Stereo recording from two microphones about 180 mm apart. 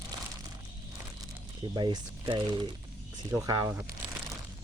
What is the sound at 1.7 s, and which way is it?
Speech, 25° right (ahead or behind).